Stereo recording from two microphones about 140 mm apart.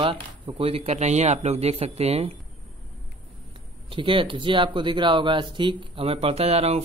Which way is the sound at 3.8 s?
35° right (ahead or behind).